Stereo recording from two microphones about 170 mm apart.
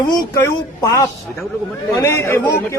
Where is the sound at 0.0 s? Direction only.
25° left (ahead or behind).